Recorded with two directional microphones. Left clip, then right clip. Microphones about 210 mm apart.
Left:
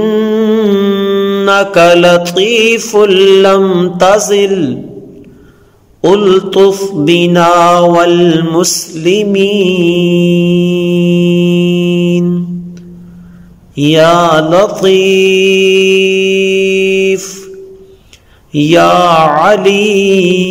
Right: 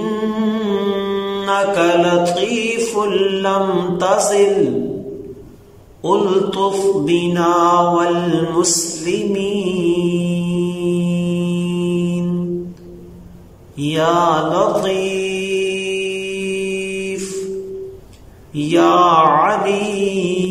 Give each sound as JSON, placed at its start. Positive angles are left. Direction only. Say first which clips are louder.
{"t": 0.0, "sound": "mantra", "louder": "left 10 dB", "side_deg": 45}
{"t": 5.9, "sound": "mantra", "louder": "left 8 dB", "side_deg": 45}
{"t": 13.7, "sound": "mantra", "louder": "left 9 dB", "side_deg": 45}
{"t": 18.5, "sound": "mantra", "louder": "left 7 dB", "side_deg": 45}